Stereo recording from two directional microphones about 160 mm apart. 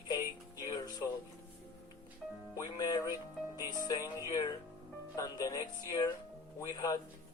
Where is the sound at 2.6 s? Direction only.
25° left (ahead or behind).